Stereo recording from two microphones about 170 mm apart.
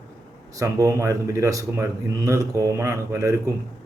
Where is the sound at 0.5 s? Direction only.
20° right (ahead or behind).